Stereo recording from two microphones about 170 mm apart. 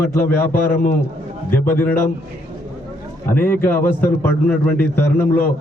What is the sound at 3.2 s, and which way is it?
A man's voice, 10° left (ahead or behind).